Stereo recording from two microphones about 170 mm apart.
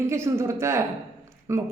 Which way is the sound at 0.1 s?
15° right (ahead or behind).